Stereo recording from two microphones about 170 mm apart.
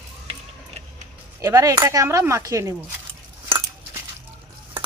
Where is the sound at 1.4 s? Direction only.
20° right (ahead or behind).